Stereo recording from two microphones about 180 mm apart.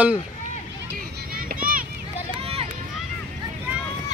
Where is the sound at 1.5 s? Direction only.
55° right (ahead or behind).